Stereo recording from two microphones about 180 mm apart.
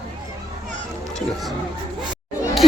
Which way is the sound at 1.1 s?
Centre (ahead or behind).